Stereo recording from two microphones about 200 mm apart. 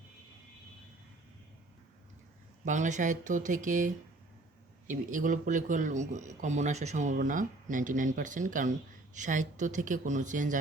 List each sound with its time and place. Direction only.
2.6 s speech: 40° right (ahead or behind)